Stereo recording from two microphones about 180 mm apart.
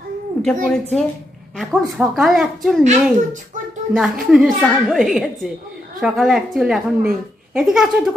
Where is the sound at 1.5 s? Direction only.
Centre (ahead or behind).